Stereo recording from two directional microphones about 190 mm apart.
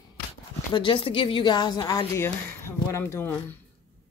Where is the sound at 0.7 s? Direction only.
25° left (ahead or behind); by 3.6 s 10° left (ahead or behind).